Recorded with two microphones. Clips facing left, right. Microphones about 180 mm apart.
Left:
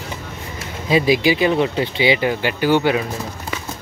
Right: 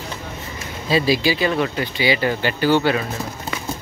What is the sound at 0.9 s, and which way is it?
Speech, 15° left (ahead or behind).